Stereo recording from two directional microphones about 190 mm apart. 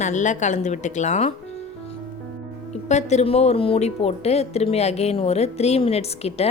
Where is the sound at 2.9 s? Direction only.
35° left (ahead or behind).